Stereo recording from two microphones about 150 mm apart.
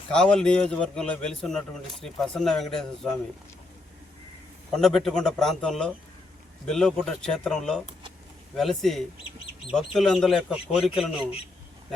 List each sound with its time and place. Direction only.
0.1 s a man's voice: 5° left (ahead or behind)
4.7 s a man's voice: 5° left (ahead or behind)
11.2 s a man's voice: 40° left (ahead or behind)